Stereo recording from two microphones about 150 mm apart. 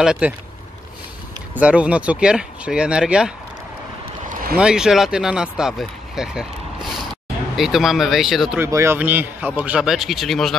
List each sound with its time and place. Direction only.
0.0 s speech: 5° right (ahead or behind)
1.5 s speech: 10° right (ahead or behind)
4.6 s speech: 5° right (ahead or behind)
8.5 s speech: 20° right (ahead or behind); by 10.5 s centre (ahead or behind)